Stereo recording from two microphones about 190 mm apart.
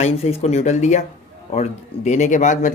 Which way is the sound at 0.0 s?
30° left (ahead or behind).